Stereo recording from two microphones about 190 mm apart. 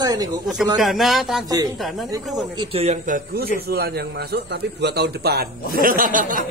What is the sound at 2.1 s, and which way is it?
A man's voice, 20° right (ahead or behind).